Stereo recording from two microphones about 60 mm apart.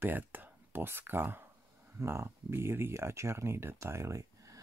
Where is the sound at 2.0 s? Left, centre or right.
Right.